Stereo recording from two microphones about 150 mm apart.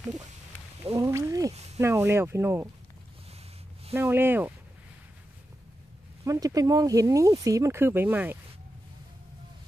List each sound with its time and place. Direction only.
0.9 s speech: 20° right (ahead or behind)
3.9 s speech: 15° right (ahead or behind)
6.2 s speech: 25° right (ahead or behind)